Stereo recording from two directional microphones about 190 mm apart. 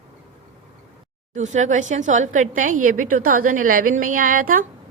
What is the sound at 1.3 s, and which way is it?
A woman's voice, 40° right (ahead or behind).